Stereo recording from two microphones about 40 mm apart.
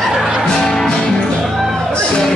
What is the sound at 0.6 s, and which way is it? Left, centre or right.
Music, centre.